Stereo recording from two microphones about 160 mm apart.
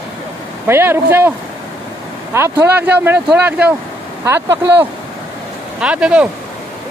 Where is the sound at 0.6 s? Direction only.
15° right (ahead or behind).